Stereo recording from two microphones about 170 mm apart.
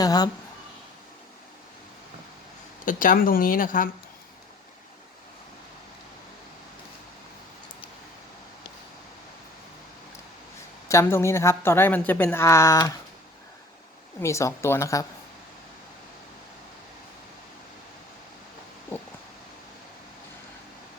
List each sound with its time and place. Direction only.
0.0 s speech: 20° left (ahead or behind)
2.8 s a woman's voice: 50° left (ahead or behind)
10.8 s a woman's voice: 15° left (ahead or behind)
14.2 s a woman's voice: 15° left (ahead or behind)
18.9 s a sound: 15° left (ahead or behind)